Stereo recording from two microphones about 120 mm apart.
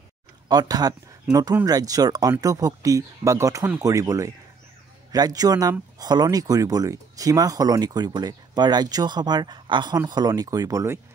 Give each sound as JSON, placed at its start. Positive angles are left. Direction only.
{"t": 0.5, "sound": "speech", "side_deg": -35}